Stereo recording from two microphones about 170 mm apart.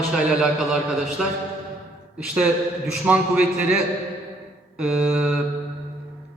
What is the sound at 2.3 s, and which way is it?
A man's voice, 5° right (ahead or behind).